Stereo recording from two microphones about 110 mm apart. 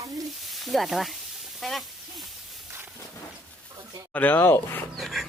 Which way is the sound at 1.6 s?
Centre (ahead or behind).